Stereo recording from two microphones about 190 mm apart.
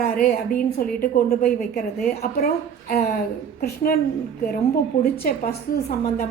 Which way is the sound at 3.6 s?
50° left (ahead or behind).